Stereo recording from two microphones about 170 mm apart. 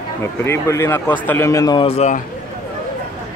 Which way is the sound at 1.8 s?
35° left (ahead or behind).